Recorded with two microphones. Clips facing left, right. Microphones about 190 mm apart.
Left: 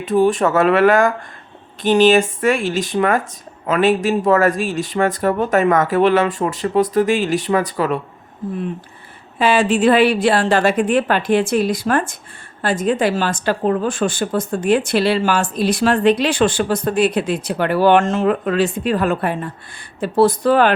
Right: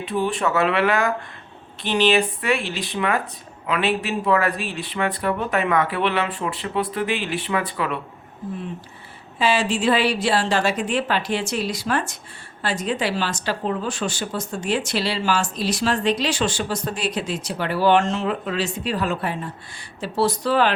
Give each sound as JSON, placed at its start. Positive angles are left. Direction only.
{"t": 0.0, "sound": "speech", "side_deg": 45}
{"t": 9.4, "sound": "a woman's voice", "side_deg": 55}